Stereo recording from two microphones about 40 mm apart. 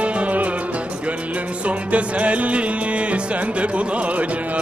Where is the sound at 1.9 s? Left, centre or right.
Right.